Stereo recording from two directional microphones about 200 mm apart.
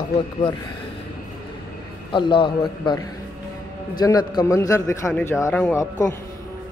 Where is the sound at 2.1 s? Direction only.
25° left (ahead or behind).